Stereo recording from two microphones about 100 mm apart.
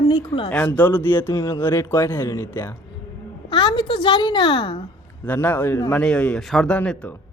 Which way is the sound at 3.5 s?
50° left (ahead or behind).